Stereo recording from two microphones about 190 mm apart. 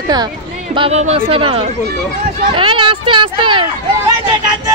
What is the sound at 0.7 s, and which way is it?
Speech, 30° right (ahead or behind).